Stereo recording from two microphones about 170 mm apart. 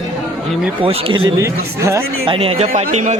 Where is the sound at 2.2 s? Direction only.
35° right (ahead or behind).